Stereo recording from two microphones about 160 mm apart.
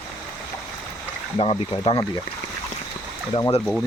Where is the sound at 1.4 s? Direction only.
30° left (ahead or behind).